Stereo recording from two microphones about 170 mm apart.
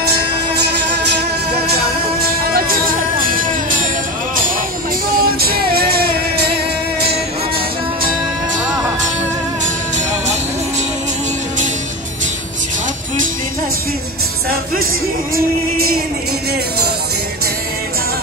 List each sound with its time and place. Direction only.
0.6 s music: 80° right
2.4 s music: 60° right (ahead or behind)
5.1 s music: 60° right (ahead or behind)